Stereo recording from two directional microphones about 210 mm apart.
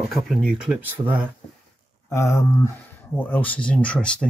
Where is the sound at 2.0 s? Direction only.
15° left (ahead or behind).